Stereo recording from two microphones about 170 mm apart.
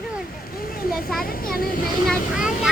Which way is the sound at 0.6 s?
60° left (ahead or behind).